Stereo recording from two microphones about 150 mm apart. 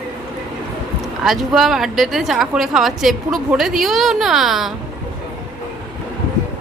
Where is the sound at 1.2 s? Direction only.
Centre (ahead or behind).